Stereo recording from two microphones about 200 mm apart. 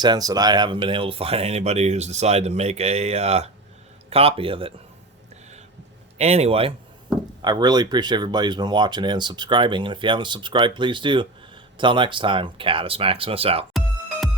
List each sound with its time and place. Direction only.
0.0 s speech: 20° right (ahead or behind)
6.1 s speech: 30° right (ahead or behind)